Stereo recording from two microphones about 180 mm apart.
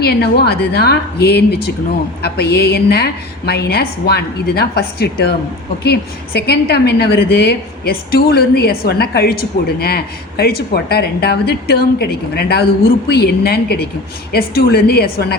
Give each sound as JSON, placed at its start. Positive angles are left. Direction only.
{"t": 0.0, "sound": "a woman's voice", "side_deg": 60}